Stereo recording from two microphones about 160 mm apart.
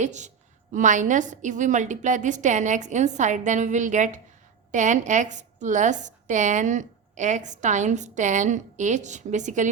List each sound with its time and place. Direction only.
0.0 s a woman's voice: 45° right (ahead or behind)